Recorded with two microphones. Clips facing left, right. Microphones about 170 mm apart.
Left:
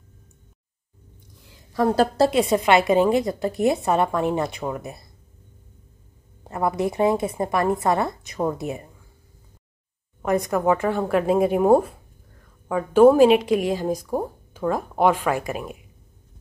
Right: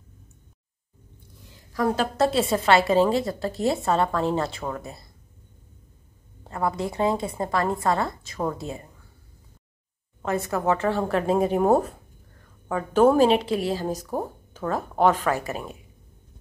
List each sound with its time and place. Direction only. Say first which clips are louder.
2.0 s a woman's voice: left 6 dB; 30° left (ahead or behind)
2.3 s a woman's voice: even; 15° left (ahead or behind)
6.4 s a woman's voice: left 4 dB; 20° left (ahead or behind)
10.2 s a woman's voice: left 4 dB; 15° left (ahead or behind)